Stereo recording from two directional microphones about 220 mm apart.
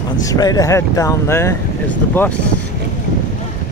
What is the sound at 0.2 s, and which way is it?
Speech, 15° left (ahead or behind).